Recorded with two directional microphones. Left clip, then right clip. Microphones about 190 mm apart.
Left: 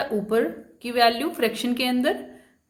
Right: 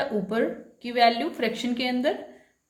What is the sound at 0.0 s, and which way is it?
A woman's voice, 20° left (ahead or behind).